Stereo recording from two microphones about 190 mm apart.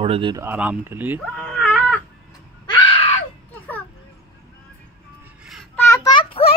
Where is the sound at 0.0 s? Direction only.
30° right (ahead or behind).